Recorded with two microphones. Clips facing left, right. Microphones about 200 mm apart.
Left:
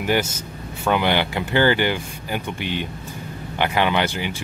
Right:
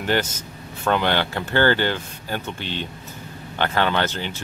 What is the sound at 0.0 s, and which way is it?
Speech, 10° left (ahead or behind).